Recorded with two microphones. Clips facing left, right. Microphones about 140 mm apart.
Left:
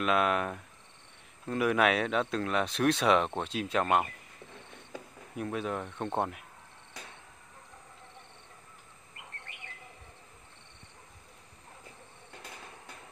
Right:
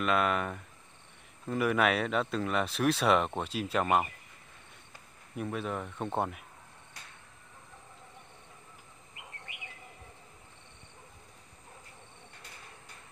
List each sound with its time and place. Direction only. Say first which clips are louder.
0.0 s speech: left 1 dB; centre (ahead or behind)
5.4 s speech: left 1 dB; centre (ahead or behind)
9.5 s bird: right 1 dB; 10° right (ahead or behind)